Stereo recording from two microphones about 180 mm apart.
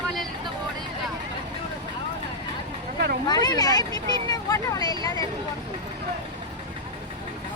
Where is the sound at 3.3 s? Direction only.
20° left (ahead or behind).